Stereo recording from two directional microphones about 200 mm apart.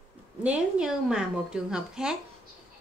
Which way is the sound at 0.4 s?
5° right (ahead or behind).